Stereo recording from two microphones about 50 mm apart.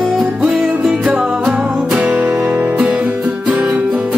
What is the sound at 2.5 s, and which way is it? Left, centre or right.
Music, right.